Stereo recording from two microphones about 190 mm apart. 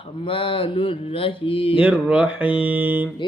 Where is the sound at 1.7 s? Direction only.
5° right (ahead or behind).